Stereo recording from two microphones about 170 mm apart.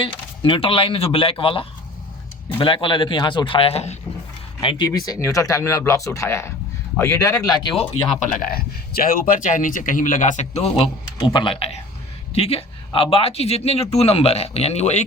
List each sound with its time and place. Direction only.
0.0 s speech: 30° left (ahead or behind)
8.4 s speech: 60° left (ahead or behind); by 15.0 s 40° left (ahead or behind)